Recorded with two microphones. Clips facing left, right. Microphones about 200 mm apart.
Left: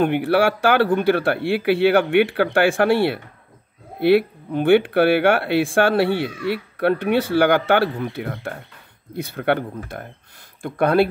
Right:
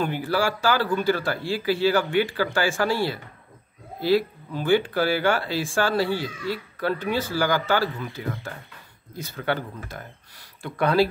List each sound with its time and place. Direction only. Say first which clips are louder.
0.0 s speech: left 7 dB; 65° left (ahead or behind)